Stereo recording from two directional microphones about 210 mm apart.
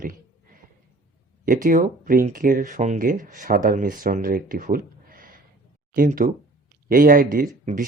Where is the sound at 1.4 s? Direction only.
40° right (ahead or behind).